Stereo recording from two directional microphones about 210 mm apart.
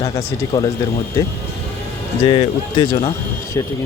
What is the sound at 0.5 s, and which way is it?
Speech, 20° left (ahead or behind).